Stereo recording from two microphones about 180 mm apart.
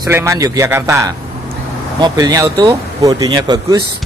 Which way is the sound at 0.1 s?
15° right (ahead or behind).